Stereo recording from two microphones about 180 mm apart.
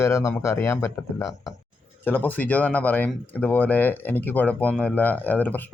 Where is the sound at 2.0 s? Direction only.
10° left (ahead or behind).